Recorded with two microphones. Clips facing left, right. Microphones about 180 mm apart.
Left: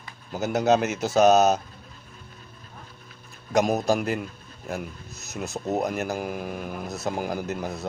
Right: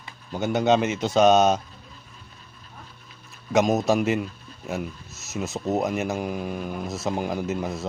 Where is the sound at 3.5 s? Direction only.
Centre (ahead or behind).